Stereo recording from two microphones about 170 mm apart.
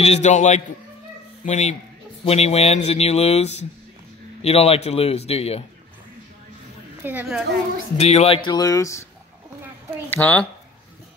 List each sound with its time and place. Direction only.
0.0 s a man's voice: 40° left (ahead or behind)
7.0 s a woman's voice: 10° right (ahead or behind)
8.0 s speech: 40° left (ahead or behind)
8.5 s speech: 20° left (ahead or behind)
10.0 s speech: 10° left (ahead or behind)